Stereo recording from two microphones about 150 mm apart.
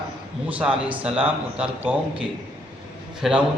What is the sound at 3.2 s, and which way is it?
Speech, centre (ahead or behind).